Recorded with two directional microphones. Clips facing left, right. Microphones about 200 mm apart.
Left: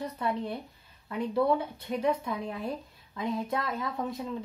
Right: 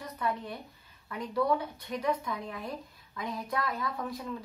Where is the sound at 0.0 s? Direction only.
30° left (ahead or behind).